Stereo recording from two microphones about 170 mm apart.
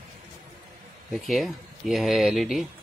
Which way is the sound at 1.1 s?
Centre (ahead or behind).